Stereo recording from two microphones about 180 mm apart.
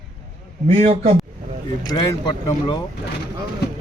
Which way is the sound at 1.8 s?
25° left (ahead or behind).